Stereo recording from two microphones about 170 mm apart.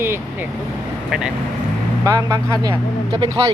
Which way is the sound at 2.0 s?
20° right (ahead or behind).